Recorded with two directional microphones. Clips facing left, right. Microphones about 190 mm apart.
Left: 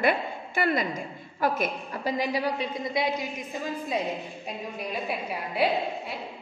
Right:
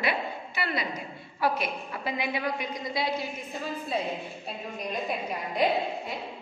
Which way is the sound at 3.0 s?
20° left (ahead or behind).